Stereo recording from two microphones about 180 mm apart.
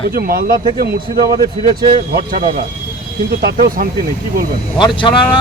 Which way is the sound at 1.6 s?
25° right (ahead or behind).